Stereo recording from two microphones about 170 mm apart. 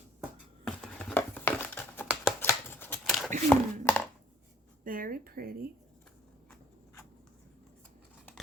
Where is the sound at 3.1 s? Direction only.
Centre (ahead or behind).